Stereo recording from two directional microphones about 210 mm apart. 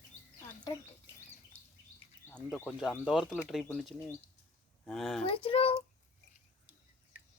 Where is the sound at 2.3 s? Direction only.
10° left (ahead or behind).